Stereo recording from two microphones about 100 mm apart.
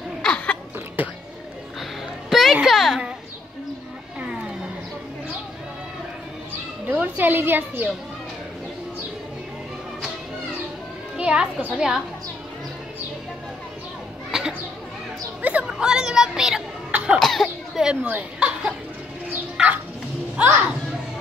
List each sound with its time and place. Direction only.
0.2 s a sound: 10° left (ahead or behind)
1.0 s a sound: 15° right (ahead or behind)
1.8 s a sound: centre (ahead or behind)
6.9 s a sound: 15° right (ahead or behind)
11.1 s a child's voice: 10° right (ahead or behind)
14.3 s children playing: 5° right (ahead or behind)
15.4 s speech: 10° right (ahead or behind)
16.9 s cough: 10° right (ahead or behind)
17.2 s cough: 5° left (ahead or behind)
17.8 s speech: 10° right (ahead or behind)
19.5 s bird: 15° right (ahead or behind)
20.3 s speech: 15° right (ahead or behind)